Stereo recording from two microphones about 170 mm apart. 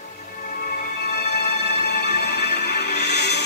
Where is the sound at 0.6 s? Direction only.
60° left (ahead or behind).